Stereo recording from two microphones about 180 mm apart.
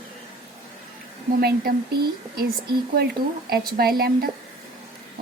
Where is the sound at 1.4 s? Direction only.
60° right (ahead or behind).